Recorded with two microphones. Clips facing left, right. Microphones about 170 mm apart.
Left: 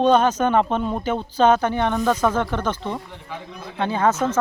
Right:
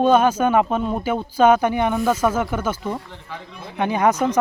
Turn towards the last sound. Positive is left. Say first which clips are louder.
# right 2 dB
turn(degrees=-15)  # may be behind; listen again after turning